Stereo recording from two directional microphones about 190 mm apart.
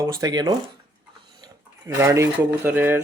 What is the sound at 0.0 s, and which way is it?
Speech, 20° right (ahead or behind).